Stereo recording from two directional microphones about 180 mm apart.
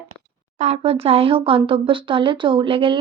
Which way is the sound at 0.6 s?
35° right (ahead or behind).